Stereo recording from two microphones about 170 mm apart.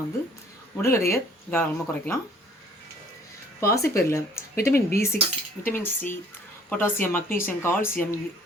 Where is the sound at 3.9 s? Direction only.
15° left (ahead or behind).